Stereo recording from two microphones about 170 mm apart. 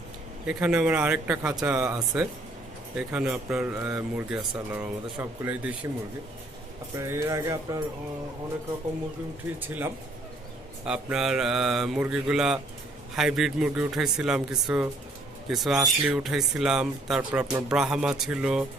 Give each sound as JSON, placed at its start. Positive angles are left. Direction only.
{"t": 0.4, "sound": "speech", "side_deg": -5}
{"t": 4.3, "sound": "speech", "side_deg": -5}
{"t": 6.9, "sound": "speech", "side_deg": -20}
{"t": 9.6, "sound": "speech", "side_deg": -10}